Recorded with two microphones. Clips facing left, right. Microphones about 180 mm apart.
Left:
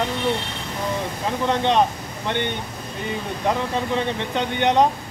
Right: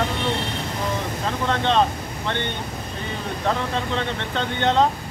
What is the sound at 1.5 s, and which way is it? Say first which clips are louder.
Speech: left 1 dB; 15° left (ahead or behind).